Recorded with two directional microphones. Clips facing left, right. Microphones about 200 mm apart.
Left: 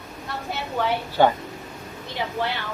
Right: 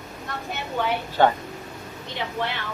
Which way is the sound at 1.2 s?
10° left (ahead or behind).